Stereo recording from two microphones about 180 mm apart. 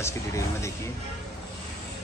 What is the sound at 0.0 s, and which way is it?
Speech, 15° left (ahead or behind).